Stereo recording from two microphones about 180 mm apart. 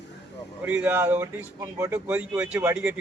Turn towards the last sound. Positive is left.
turn(degrees=-5)  # may be behind; listen again after turning